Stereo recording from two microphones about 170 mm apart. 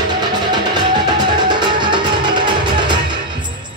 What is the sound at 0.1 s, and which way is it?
Music, 25° right (ahead or behind).